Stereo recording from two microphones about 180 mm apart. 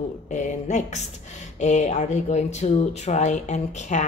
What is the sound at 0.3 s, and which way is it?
Speech, 40° left (ahead or behind).